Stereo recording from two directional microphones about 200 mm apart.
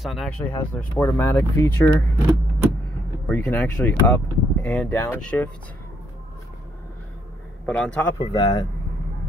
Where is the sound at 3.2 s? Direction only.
10° left (ahead or behind).